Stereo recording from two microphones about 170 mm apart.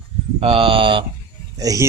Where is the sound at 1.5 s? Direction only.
20° right (ahead or behind).